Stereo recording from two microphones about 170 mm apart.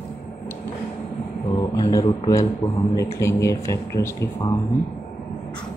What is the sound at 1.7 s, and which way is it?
Speech, 20° left (ahead or behind).